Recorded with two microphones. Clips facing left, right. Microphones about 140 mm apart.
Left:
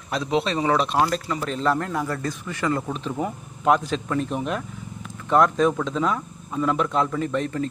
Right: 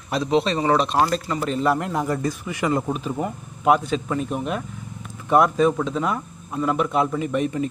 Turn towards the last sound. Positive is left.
turn(degrees=-10)  # may be behind; listen again after turning